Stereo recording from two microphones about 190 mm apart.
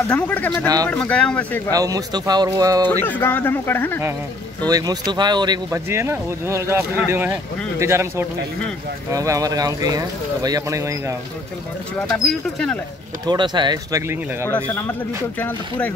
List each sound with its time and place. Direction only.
0.1 s speech: 10° left (ahead or behind)
1.7 s speech: 20° right (ahead or behind)
2.9 s speech: 10° left (ahead or behind)
4.6 s speech: 20° right (ahead or behind)
12.1 s speech: 5° left (ahead or behind)
13.3 s speech: 25° right (ahead or behind)
14.5 s speech: 10° left (ahead or behind)